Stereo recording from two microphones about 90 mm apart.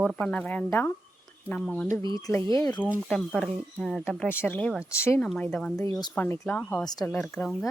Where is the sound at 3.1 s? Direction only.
5° left (ahead or behind).